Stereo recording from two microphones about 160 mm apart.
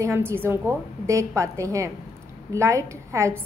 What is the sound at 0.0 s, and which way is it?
A woman's voice, 15° right (ahead or behind).